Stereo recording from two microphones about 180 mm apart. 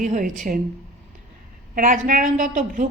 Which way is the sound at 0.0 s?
45° right (ahead or behind).